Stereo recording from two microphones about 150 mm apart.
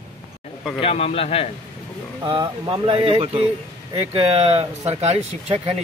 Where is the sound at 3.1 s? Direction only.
45° right (ahead or behind).